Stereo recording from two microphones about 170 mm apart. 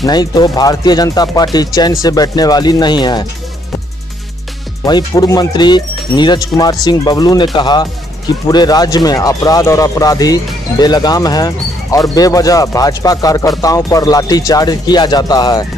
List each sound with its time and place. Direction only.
0.0 s speech: 25° left (ahead or behind)
4.8 s speech: 25° left (ahead or behind)